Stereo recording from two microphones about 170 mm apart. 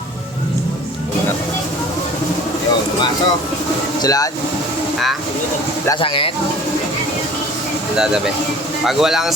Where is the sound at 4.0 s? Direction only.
20° left (ahead or behind).